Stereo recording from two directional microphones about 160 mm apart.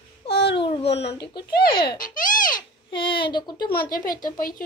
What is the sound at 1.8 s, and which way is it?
Speech, 60° left (ahead or behind).